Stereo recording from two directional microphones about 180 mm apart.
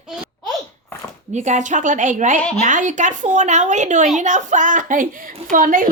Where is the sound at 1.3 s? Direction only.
40° right (ahead or behind).